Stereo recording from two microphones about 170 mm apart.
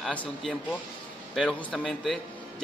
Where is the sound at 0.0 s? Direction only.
5° left (ahead or behind).